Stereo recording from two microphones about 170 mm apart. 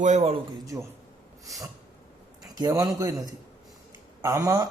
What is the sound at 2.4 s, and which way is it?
A man's voice, 20° right (ahead or behind).